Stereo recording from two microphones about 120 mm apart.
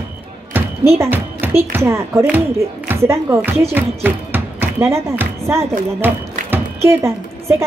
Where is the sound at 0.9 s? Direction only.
20° right (ahead or behind).